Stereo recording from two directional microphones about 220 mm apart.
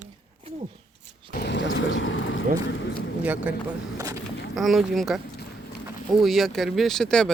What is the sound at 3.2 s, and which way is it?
Speech, 5° right (ahead or behind).